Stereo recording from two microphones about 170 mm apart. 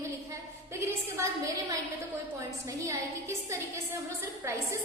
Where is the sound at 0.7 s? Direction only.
15° right (ahead or behind).